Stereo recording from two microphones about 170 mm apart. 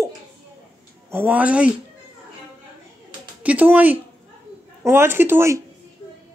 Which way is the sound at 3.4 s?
10° right (ahead or behind).